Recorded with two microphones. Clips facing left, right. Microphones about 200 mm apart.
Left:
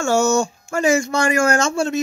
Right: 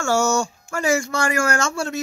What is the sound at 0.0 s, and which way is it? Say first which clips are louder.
Speech: left 3 dB; 20° left (ahead or behind).